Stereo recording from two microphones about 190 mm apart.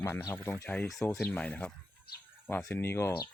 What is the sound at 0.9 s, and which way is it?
Speech, 20° left (ahead or behind).